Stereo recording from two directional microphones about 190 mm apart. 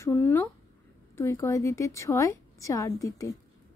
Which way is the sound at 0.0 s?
10° left (ahead or behind).